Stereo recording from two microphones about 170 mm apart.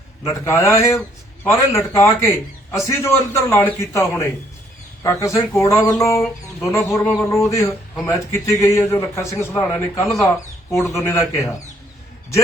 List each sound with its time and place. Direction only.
0.3 s a man's voice: 15° left (ahead or behind)
6.8 s a man's voice: 5° left (ahead or behind)